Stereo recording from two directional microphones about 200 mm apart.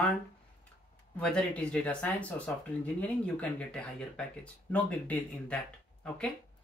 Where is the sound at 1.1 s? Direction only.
5° left (ahead or behind).